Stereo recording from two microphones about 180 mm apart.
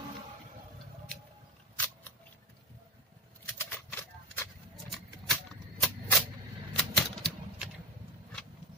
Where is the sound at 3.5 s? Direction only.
10° left (ahead or behind).